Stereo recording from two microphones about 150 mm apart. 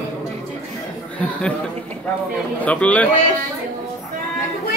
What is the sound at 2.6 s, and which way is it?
Speech, 10° left (ahead or behind).